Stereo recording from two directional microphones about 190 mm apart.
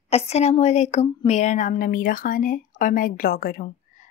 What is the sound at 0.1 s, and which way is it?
Speech, 35° left (ahead or behind).